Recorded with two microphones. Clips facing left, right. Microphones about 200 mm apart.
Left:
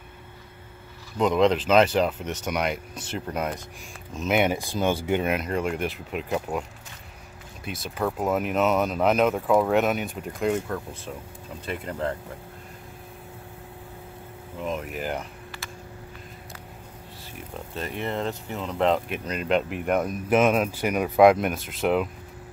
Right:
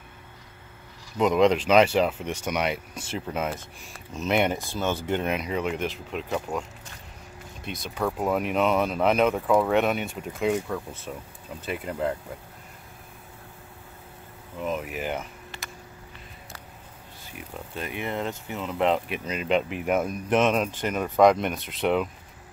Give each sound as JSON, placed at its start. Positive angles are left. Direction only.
{"t": 1.1, "sound": "speech", "side_deg": -5}
{"t": 7.6, "sound": "speech", "side_deg": 5}
{"t": 14.6, "sound": "speech", "side_deg": 0}
{"t": 15.5, "sound": "vehicle", "side_deg": -25}
{"t": 17.7, "sound": "speech", "side_deg": 0}